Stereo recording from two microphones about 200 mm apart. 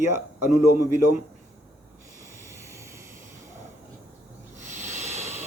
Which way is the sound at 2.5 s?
15° right (ahead or behind).